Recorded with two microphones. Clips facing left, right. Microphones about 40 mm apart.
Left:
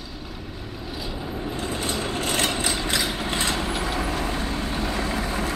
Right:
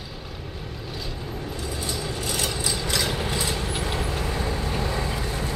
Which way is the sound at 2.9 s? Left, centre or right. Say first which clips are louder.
Even; centre.